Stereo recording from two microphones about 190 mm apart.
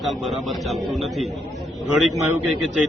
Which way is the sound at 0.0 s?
Centre (ahead or behind).